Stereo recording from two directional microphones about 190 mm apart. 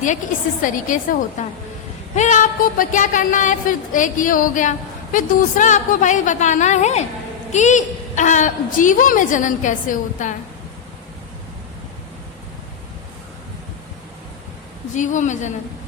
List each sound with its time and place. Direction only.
0.6 s a woman's voice: 45° left (ahead or behind)
14.9 s a woman's voice: 40° left (ahead or behind)